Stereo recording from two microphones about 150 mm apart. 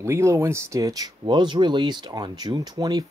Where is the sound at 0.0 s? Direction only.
20° right (ahead or behind).